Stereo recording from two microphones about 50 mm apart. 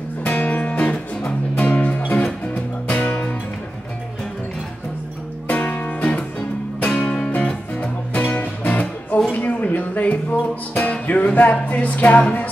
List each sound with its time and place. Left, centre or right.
0.2 s music: left
5.5 s music: left
9.3 s a sound: left
10.8 s music: left